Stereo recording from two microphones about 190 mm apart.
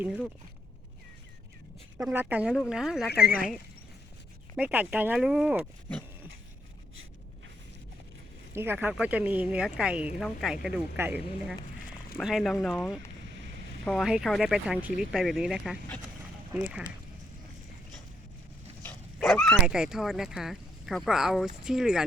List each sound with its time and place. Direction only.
0.0 s speech: 5° right (ahead or behind)
2.0 s speech: 5° right (ahead or behind)
3.2 s speech: 50° left (ahead or behind)
4.5 s speech: 10° right (ahead or behind)
8.5 s speech: 10° right (ahead or behind)
19.5 s speech: 5° right (ahead or behind)